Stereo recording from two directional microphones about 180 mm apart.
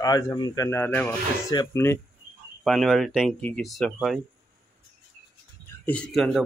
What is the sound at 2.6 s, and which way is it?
A man's voice, centre (ahead or behind).